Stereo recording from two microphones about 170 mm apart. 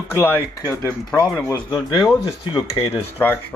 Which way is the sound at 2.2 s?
30° left (ahead or behind).